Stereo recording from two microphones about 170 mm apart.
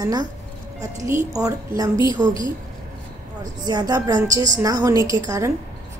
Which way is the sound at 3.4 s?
25° right (ahead or behind).